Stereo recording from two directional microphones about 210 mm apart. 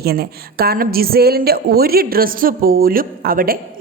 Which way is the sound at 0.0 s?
45° right (ahead or behind).